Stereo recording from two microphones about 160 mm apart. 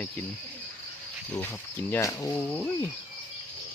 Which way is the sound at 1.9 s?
20° left (ahead or behind).